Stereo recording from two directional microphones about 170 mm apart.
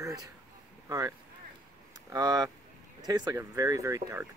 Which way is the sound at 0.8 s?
20° right (ahead or behind).